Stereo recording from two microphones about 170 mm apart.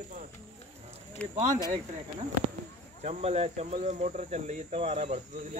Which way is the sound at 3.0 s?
40° right (ahead or behind).